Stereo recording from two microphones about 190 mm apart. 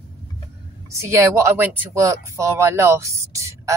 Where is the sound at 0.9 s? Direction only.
15° right (ahead or behind).